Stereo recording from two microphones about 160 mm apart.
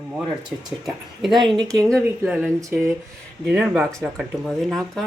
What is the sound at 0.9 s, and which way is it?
Speech, centre (ahead or behind).